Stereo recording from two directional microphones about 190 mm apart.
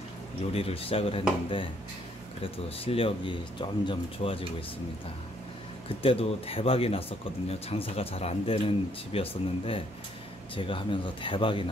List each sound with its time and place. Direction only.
0.5 s speech: 30° left (ahead or behind)
2.4 s speech: 30° left (ahead or behind)
5.9 s speech: 30° left (ahead or behind)